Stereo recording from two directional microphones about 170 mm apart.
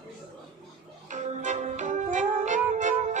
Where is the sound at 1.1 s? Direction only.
45° right (ahead or behind).